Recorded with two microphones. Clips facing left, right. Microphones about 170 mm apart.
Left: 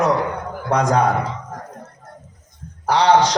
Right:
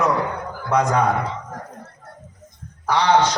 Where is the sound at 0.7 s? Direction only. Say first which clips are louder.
Left 1 dB; 35° left (ahead or behind).